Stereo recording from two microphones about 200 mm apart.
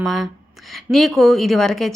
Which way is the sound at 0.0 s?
Centre (ahead or behind).